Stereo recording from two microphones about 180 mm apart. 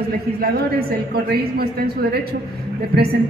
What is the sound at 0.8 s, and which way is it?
A woman's voice, 60° right (ahead or behind).